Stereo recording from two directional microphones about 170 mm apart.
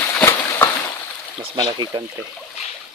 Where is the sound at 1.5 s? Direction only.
25° right (ahead or behind).